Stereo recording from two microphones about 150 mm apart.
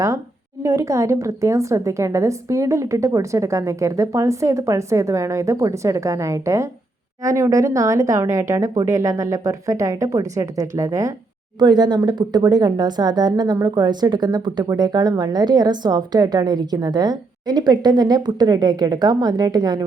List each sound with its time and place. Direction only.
0.6 s speech: 20° right (ahead or behind)